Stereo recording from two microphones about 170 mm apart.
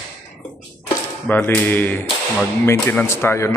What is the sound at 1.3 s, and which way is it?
Speech, 10° left (ahead or behind).